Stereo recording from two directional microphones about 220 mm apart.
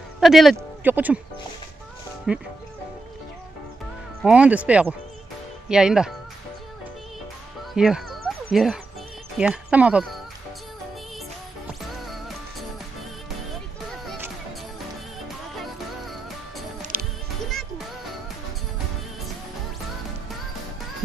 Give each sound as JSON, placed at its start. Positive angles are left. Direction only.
{"t": 0.2, "sound": "speech", "side_deg": 0}
{"t": 2.3, "sound": "speech", "side_deg": -5}
{"t": 4.2, "sound": "speech", "side_deg": -5}
{"t": 7.7, "sound": "a sound", "side_deg": 0}
{"t": 9.4, "sound": "speech", "side_deg": -5}
{"t": 16.9, "sound": "music", "side_deg": -40}
{"t": 17.5, "sound": "music", "side_deg": 0}